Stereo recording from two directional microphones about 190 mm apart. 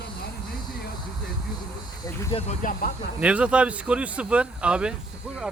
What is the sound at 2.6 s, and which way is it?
Speech, 45° left (ahead or behind).